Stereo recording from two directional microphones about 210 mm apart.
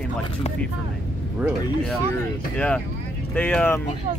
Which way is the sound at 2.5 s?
5° left (ahead or behind).